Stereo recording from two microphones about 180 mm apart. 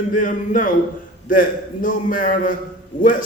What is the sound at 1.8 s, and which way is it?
Speech, 45° left (ahead or behind).